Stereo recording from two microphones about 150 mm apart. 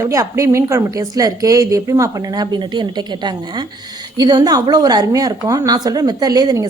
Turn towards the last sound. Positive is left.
turn(degrees=-25)  # may be behind; listen again after turning